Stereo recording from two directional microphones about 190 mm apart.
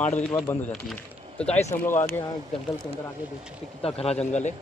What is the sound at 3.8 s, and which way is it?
Speech, 30° left (ahead or behind).